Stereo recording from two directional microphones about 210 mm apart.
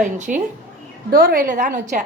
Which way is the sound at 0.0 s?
35° right (ahead or behind).